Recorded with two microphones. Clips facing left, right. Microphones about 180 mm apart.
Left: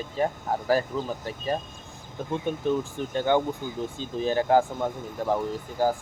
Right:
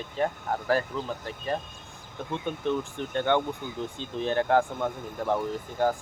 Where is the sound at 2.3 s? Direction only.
5° left (ahead or behind).